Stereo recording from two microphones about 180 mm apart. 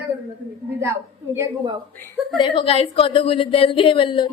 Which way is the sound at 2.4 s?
30° left (ahead or behind).